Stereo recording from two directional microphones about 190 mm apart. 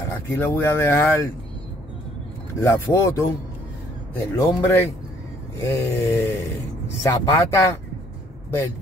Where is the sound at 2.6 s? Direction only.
15° left (ahead or behind).